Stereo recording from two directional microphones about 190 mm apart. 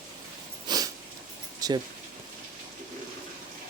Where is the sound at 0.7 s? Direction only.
20° right (ahead or behind).